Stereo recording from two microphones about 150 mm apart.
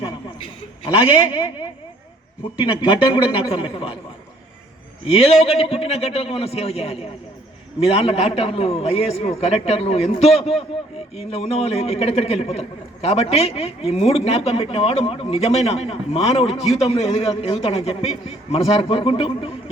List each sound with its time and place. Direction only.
1.3 s a man's voice: 30° left (ahead or behind)
5.0 s a man's voice: 40° left (ahead or behind)